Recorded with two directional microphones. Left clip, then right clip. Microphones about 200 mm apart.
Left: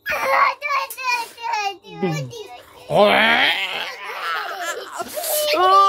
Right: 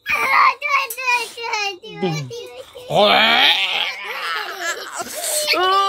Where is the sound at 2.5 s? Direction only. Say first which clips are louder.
Even; 15° left (ahead or behind).